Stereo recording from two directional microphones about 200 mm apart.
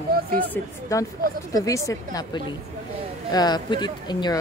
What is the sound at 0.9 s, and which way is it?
Speech, 15° left (ahead or behind).